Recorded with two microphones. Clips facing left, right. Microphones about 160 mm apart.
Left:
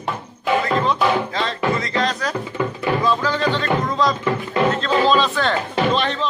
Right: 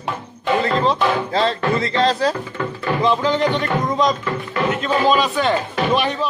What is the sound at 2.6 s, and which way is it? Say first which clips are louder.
Music: left 4 dB; 15° left (ahead or behind).